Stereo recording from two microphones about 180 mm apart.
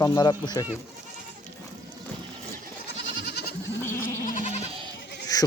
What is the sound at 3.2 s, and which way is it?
Goat, 65° left (ahead or behind).